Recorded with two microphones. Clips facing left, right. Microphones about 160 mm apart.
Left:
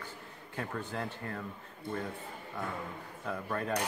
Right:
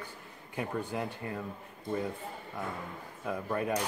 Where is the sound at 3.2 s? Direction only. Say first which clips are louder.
Right 3 dB; 10° right (ahead or behind).